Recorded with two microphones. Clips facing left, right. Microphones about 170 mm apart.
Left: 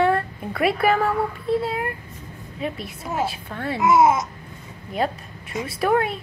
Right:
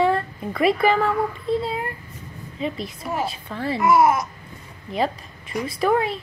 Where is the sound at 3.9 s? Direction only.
20° left (ahead or behind).